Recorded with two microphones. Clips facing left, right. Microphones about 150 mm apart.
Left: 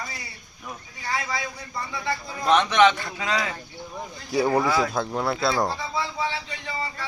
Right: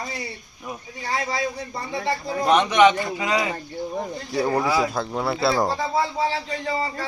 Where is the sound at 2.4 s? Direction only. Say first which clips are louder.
Right 2 dB; 15° right (ahead or behind).